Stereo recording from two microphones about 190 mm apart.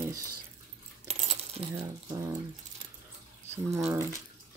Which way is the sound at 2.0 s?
20° right (ahead or behind).